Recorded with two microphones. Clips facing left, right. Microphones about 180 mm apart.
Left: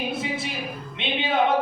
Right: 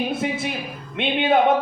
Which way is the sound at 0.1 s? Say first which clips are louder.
Right 4 dB; 50° right (ahead or behind).